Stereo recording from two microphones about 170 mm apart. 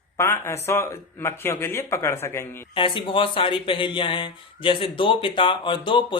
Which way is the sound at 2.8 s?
30° left (ahead or behind).